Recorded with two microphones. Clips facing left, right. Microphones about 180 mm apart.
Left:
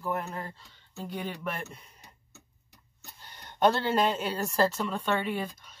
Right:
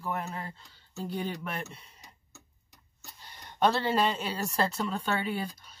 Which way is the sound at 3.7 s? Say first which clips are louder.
Left 1 dB; centre (ahead or behind).